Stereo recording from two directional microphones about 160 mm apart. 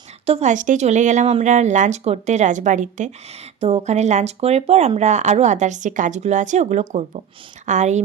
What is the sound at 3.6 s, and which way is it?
A woman's voice, 40° right (ahead or behind).